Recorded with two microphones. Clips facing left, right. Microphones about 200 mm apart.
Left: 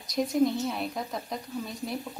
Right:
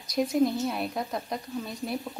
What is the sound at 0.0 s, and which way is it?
A woman's voice, centre (ahead or behind).